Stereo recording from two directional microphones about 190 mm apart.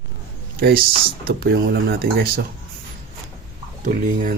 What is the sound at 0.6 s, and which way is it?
Speech, 50° right (ahead or behind).